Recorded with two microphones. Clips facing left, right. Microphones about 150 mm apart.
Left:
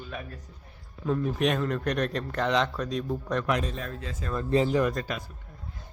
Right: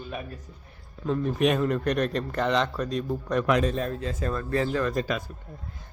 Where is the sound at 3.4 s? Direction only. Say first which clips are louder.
Right 5 dB; 80° right.